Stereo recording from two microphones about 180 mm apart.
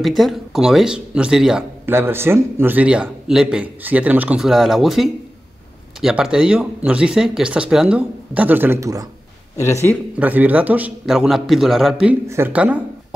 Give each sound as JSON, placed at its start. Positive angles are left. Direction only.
{"t": 0.0, "sound": "speech", "side_deg": 0}
{"t": 9.6, "sound": "speech", "side_deg": 15}
{"t": 10.1, "sound": "a man's voice", "side_deg": -10}